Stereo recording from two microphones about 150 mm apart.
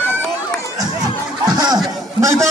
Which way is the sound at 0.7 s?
25° right (ahead or behind).